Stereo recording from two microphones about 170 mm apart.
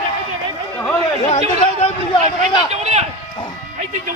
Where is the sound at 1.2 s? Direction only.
40° left (ahead or behind).